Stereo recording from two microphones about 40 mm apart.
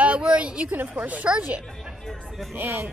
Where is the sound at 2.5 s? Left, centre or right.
Right.